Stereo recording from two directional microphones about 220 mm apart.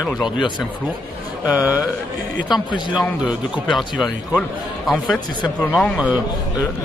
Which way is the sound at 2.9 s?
5° right (ahead or behind).